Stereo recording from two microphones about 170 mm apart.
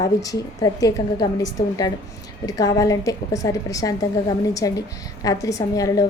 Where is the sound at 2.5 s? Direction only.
20° left (ahead or behind).